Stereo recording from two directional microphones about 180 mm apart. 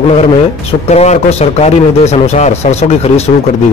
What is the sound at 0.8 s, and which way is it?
Speech, 40° left (ahead or behind).